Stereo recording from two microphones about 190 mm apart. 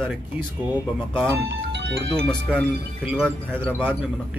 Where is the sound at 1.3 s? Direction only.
65° right (ahead or behind).